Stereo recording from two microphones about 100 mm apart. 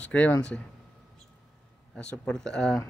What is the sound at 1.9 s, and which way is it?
Speech, 10° left (ahead or behind).